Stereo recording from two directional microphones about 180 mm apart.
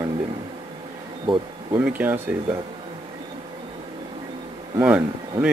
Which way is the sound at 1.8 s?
10° right (ahead or behind).